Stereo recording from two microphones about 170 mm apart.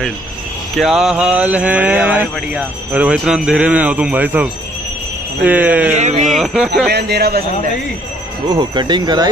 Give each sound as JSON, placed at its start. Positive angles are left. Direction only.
{"t": 0.7, "sound": "mantra", "side_deg": 0}
{"t": 5.9, "sound": "speech", "side_deg": -45}
{"t": 6.3, "sound": "speech", "side_deg": -5}
{"t": 6.9, "sound": "a man's voice", "side_deg": -75}
{"t": 8.5, "sound": "speech", "side_deg": -30}